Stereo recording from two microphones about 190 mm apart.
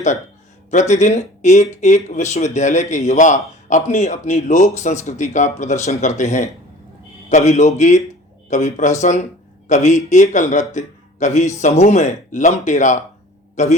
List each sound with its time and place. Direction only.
0.7 s speech: 40° left (ahead or behind)